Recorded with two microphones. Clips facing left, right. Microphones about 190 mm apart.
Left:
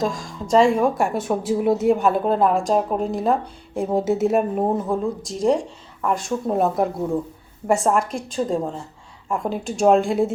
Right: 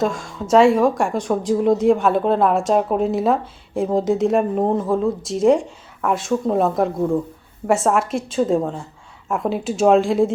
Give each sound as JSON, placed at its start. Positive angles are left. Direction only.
{"t": 0.5, "sound": "a woman's voice", "side_deg": 0}